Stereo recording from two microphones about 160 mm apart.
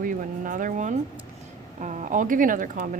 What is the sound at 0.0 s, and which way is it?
Speech, 55° right (ahead or behind).